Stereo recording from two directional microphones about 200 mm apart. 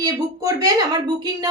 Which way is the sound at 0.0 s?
15° right (ahead or behind).